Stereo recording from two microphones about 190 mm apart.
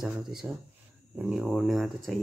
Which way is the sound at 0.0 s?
5° right (ahead or behind).